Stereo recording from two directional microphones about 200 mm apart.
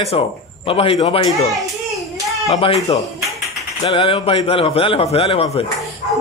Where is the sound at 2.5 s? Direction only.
25° left (ahead or behind).